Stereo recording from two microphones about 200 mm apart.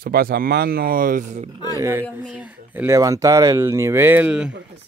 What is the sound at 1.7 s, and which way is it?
Speech, 15° right (ahead or behind).